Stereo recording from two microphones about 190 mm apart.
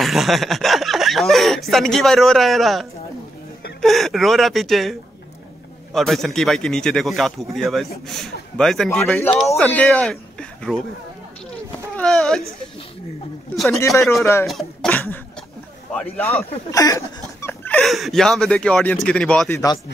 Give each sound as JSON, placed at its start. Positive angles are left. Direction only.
{"t": 0.0, "sound": "speech", "side_deg": 0}
{"t": 5.9, "sound": "speech", "side_deg": 0}
{"t": 12.0, "sound": "speech", "side_deg": 5}
{"t": 13.7, "sound": "speech", "side_deg": 15}
{"t": 14.4, "sound": "speech", "side_deg": 0}
{"t": 16.7, "sound": "speech", "side_deg": 15}
{"t": 19.5, "sound": "speech", "side_deg": 20}